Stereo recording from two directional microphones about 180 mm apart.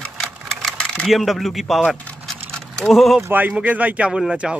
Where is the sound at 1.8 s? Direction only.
5° left (ahead or behind).